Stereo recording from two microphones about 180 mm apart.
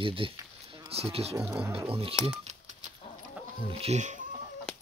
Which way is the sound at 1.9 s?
30° right (ahead or behind).